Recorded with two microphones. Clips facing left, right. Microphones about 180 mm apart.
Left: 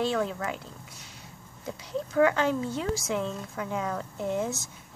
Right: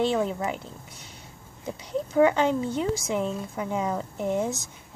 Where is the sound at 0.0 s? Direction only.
20° right (ahead or behind).